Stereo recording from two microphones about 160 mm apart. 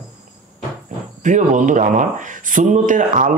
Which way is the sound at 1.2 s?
50° right (ahead or behind).